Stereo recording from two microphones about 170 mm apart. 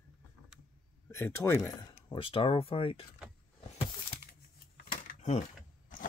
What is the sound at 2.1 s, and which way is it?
Speech, 30° left (ahead or behind).